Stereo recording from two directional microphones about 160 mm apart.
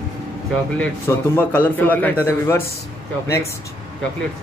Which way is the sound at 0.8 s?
15° left (ahead or behind).